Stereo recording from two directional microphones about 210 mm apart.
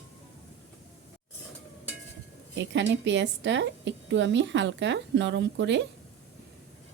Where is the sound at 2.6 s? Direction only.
55° right (ahead or behind).